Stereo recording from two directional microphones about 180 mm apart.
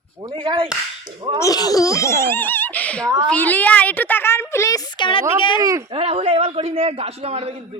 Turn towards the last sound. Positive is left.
turn(degrees=-35)  # may be behind; listen again after turning